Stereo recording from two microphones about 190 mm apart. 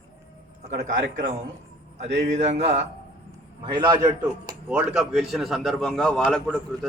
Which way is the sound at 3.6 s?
20° right (ahead or behind).